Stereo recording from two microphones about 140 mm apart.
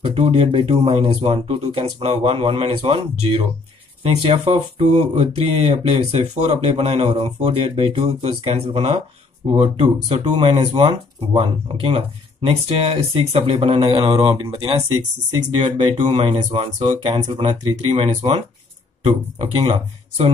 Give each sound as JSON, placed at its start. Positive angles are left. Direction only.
{"t": 0.0, "sound": "speech", "side_deg": -45}
{"t": 16.2, "sound": "speech", "side_deg": -40}
{"t": 19.4, "sound": "speech", "side_deg": -45}